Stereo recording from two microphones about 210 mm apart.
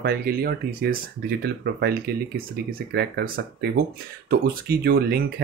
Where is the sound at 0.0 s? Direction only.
45° right (ahead or behind).